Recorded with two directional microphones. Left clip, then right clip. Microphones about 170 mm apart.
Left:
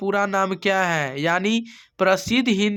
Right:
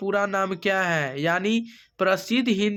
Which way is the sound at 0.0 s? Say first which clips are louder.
Left 3 dB; 30° left (ahead or behind).